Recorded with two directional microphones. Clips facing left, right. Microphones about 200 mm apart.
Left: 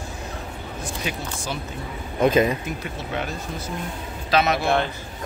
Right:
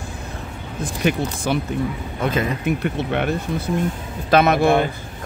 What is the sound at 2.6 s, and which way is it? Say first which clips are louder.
Speech: right 9 dB; 60° right (ahead or behind).